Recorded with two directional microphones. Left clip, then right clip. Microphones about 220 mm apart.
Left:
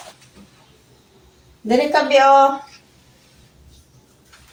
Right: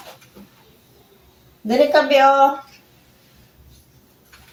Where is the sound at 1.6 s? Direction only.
20° right (ahead or behind).